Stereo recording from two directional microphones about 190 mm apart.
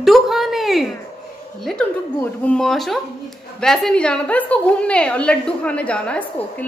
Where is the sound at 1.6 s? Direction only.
5° left (ahead or behind).